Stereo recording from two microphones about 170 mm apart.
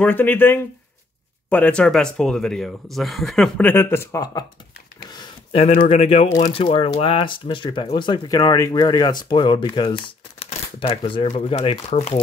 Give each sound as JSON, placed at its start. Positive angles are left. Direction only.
{"t": 0.0, "sound": "speech", "side_deg": 10}
{"t": 5.2, "sound": "a sound", "side_deg": 35}
{"t": 5.9, "sound": "speech", "side_deg": 35}
{"t": 6.2, "sound": "speech", "side_deg": 20}
{"t": 6.5, "sound": "speech", "side_deg": 30}